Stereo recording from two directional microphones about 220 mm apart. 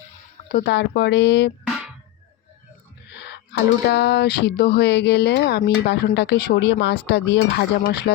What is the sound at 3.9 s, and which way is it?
Speech, 50° left (ahead or behind).